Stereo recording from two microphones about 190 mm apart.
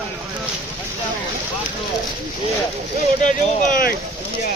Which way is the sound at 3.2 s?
45° left (ahead or behind).